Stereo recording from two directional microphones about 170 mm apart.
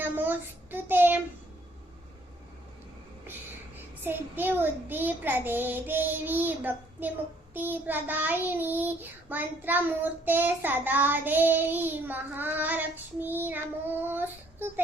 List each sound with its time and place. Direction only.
0.0 s child singing: 10° right (ahead or behind)
4.0 s child singing: 10° right (ahead or behind)